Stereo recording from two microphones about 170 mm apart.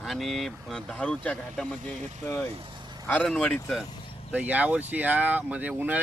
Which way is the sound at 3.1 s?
5° left (ahead or behind).